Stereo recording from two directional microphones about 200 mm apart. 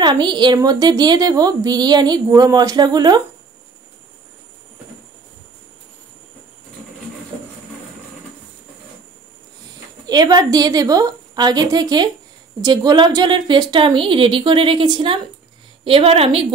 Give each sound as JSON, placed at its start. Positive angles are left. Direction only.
{"t": 0.0, "sound": "a woman's voice", "side_deg": -20}
{"t": 10.0, "sound": "a woman's voice", "side_deg": -20}